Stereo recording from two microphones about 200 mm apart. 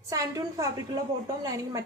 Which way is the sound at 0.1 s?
15° right (ahead or behind).